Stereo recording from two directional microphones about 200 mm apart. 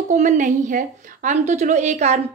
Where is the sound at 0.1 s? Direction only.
40° right (ahead or behind).